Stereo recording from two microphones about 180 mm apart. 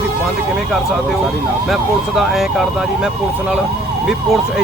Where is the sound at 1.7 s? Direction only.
Centre (ahead or behind).